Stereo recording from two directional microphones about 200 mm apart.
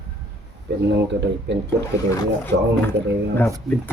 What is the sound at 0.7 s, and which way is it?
Speech, 55° right (ahead or behind).